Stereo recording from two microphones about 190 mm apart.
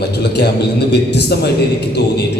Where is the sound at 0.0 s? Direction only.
60° left (ahead or behind).